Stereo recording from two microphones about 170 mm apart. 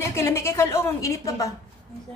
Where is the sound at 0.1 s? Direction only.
15° left (ahead or behind).